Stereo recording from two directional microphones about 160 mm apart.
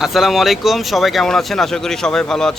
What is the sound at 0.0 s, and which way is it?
Speech, centre (ahead or behind).